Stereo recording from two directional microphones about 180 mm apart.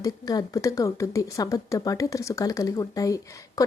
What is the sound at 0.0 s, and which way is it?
Speech, 20° left (ahead or behind).